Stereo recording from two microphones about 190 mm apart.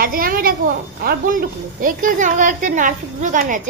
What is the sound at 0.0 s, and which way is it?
A woman's voice, 50° right (ahead or behind).